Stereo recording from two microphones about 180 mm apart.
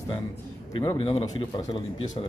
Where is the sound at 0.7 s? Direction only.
30° left (ahead or behind).